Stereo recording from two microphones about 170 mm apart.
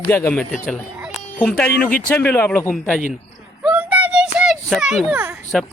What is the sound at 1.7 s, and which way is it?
Speech, 55° left (ahead or behind).